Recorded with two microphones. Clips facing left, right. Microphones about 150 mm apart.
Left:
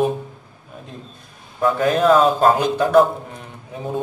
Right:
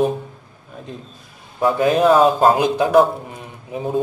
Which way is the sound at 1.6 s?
15° right (ahead or behind).